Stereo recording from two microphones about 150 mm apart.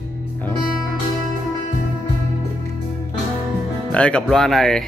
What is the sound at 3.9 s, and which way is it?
Speech, 5° left (ahead or behind).